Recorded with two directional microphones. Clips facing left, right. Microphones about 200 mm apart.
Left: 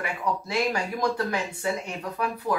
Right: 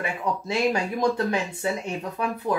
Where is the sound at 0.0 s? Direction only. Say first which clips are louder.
Right 1 dB; 25° right (ahead or behind).